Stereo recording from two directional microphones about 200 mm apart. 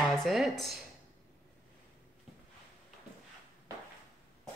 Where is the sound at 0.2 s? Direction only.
Centre (ahead or behind).